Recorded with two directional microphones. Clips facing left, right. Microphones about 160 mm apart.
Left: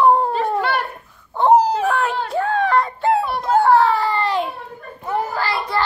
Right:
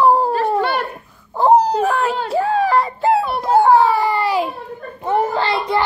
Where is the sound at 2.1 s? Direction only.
5° right (ahead or behind).